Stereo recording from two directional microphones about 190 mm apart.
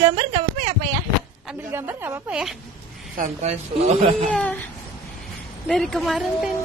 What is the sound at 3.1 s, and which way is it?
Speech, 35° right (ahead or behind).